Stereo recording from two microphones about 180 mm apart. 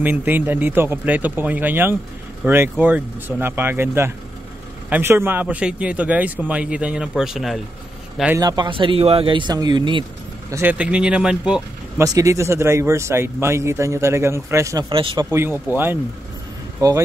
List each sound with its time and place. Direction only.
0.0 s speech: 10° right (ahead or behind)
8.4 s speech: 25° right (ahead or behind)
10.5 s speech: 10° right (ahead or behind)
12.0 s speech: 20° right (ahead or behind)
14.9 s speech: 30° right (ahead or behind)
15.7 s speech: 10° right (ahead or behind)